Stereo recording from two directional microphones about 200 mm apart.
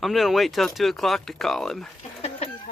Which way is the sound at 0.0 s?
Centre (ahead or behind).